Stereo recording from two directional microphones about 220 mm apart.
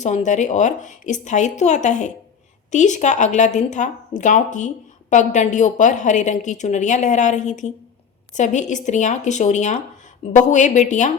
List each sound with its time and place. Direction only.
0.0 s speech: 35° left (ahead or behind)